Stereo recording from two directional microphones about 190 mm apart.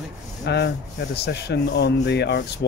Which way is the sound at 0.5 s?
60° left (ahead or behind).